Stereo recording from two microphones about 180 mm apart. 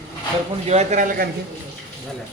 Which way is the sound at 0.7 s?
40° right (ahead or behind).